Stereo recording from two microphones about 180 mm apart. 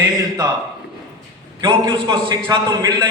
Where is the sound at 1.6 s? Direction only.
25° right (ahead or behind).